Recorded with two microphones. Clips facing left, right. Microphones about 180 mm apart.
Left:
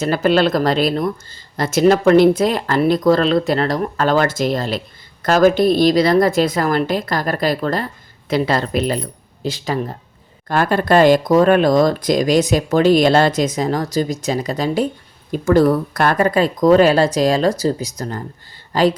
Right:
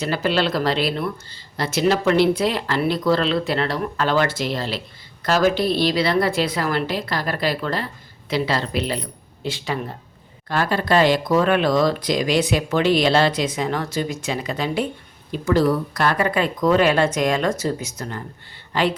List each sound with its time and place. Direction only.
0.0 s speech: 50° left (ahead or behind)
10.5 s speech: 50° left (ahead or behind)